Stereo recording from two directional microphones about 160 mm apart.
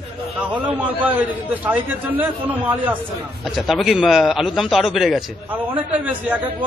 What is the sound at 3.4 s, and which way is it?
A man's voice, centre (ahead or behind).